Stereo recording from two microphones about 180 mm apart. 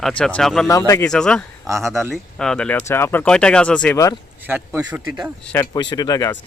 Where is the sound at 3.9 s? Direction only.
20° left (ahead or behind).